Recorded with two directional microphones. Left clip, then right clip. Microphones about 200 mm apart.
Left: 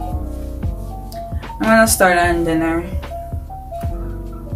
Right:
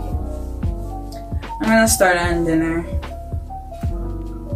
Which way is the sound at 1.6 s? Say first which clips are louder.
Left 2 dB; 10° left (ahead or behind).